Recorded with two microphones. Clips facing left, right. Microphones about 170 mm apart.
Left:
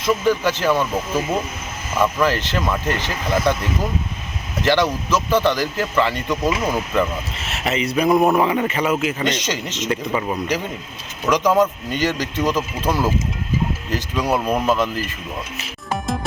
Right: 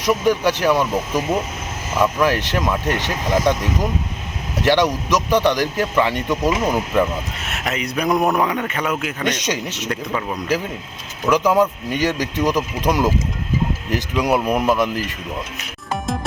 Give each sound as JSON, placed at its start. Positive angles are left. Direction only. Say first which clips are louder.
{"t": 0.0, "sound": "a man's voice", "louder": "right 1 dB", "side_deg": -15}
{"t": 2.2, "sound": "a man's voice", "louder": "right 1 dB", "side_deg": -15}
{"t": 7.5, "sound": "a man's voice", "louder": "left 3 dB", "side_deg": 0}
{"t": 9.2, "sound": "a man's voice", "louder": "even", "side_deg": -10}
{"t": 9.9, "sound": "speech", "louder": "left 3 dB", "side_deg": 10}
{"t": 11.3, "sound": "a man's voice", "louder": "right 1 dB", "side_deg": -10}
{"t": 15.5, "sound": "music", "louder": "even", "side_deg": 0}